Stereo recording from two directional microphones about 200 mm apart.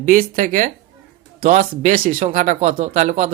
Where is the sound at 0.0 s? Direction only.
40° right (ahead or behind).